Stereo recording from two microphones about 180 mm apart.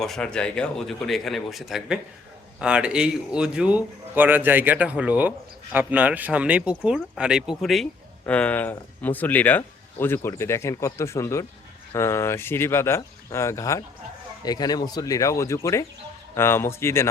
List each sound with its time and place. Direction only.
0.0 s a man's voice: 5° left (ahead or behind)